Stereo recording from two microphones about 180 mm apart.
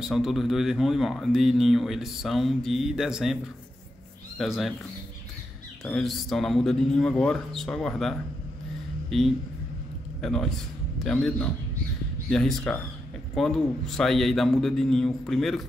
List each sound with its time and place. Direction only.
0.0 s speech: centre (ahead or behind)
4.4 s speech: centre (ahead or behind)
5.9 s speech: centre (ahead or behind)